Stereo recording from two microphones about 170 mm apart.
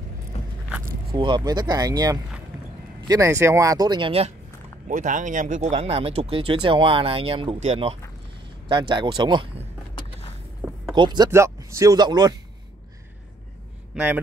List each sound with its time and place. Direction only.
0.3 s vehicle: 40° left (ahead or behind)
1.1 s speech: 25° right (ahead or behind)
4.8 s speech: 50° right (ahead or behind); by 9.5 s 25° right (ahead or behind)
11.0 s speech: 25° right (ahead or behind)
13.9 s speech: 10° right (ahead or behind)